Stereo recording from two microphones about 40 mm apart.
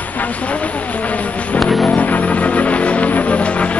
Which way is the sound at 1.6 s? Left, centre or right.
Centre.